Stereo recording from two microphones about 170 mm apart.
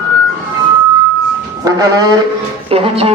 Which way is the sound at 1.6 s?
20° right (ahead or behind).